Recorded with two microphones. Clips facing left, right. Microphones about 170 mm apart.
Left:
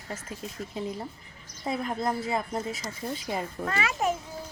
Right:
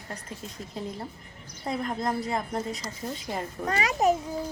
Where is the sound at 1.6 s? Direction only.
5° left (ahead or behind).